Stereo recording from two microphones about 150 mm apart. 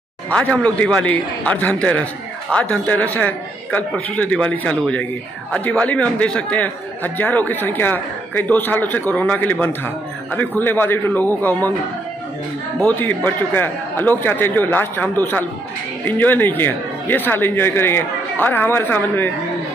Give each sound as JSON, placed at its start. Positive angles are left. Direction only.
{"t": 0.3, "sound": "a man's voice", "side_deg": 10}
{"t": 12.8, "sound": "a man's voice", "side_deg": 10}